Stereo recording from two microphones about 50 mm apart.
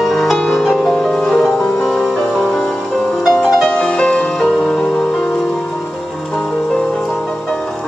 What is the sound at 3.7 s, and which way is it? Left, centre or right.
Music, centre.